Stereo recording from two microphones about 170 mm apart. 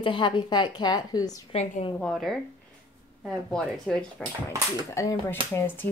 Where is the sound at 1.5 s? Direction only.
40° left (ahead or behind).